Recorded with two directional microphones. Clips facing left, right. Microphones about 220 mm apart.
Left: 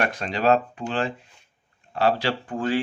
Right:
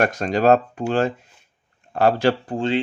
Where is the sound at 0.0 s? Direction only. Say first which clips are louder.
Right 5 dB; 45° right (ahead or behind).